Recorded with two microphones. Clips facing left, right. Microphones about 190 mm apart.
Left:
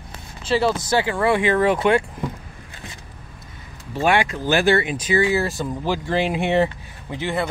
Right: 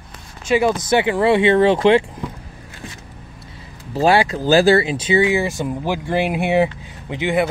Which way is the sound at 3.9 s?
35° right (ahead or behind).